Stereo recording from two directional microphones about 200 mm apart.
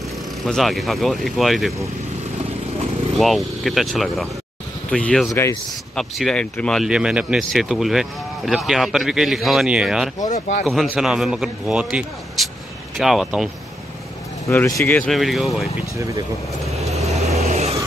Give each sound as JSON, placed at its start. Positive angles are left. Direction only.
{"t": 0.5, "sound": "speech", "side_deg": 0}
{"t": 3.2, "sound": "speech", "side_deg": 0}
{"t": 5.3, "sound": "speech", "side_deg": 15}
{"t": 5.9, "sound": "speech", "side_deg": 0}
{"t": 14.5, "sound": "speech", "side_deg": 15}
{"t": 16.0, "sound": "speech", "side_deg": -15}
{"t": 16.7, "sound": "vehicle", "side_deg": -30}